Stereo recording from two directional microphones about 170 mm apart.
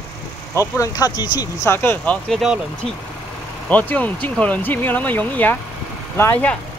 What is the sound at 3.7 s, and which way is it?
Speech, 10° left (ahead or behind).